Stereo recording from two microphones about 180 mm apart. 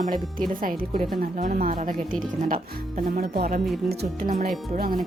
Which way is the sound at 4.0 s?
50° right (ahead or behind).